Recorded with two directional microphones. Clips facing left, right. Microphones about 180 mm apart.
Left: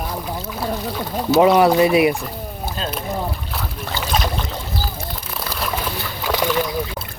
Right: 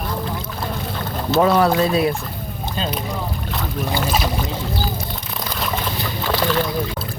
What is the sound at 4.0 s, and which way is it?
Speech, 5° right (ahead or behind).